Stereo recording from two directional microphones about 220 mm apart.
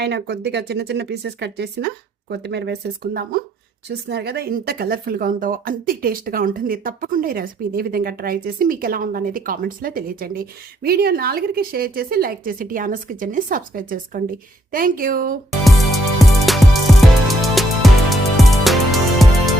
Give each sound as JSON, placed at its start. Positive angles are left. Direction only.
{"t": 0.0, "sound": "speech", "side_deg": -50}
{"t": 16.1, "sound": "music", "side_deg": 0}